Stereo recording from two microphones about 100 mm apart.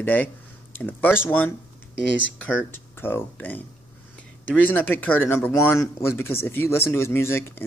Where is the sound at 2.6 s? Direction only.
20° left (ahead or behind).